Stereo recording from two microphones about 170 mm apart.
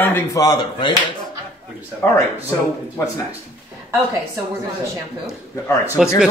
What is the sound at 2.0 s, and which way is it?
Speech, 10° left (ahead or behind).